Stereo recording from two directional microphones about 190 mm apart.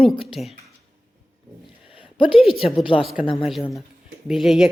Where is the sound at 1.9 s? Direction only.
30° left (ahead or behind).